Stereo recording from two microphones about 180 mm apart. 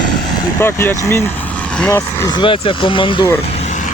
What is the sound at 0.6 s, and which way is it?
Speech, 15° left (ahead or behind).